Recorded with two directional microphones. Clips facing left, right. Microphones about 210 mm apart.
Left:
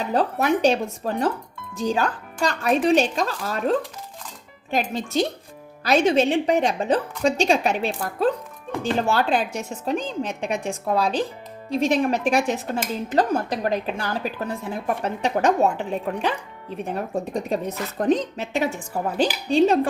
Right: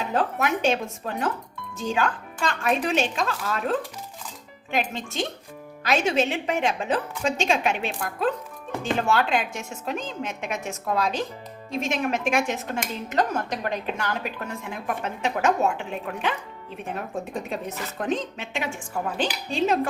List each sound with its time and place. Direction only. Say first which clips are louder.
0.1 s speech: left 5 dB; 35° left (ahead or behind)
5.8 s speech: left 5 dB; 35° left (ahead or behind)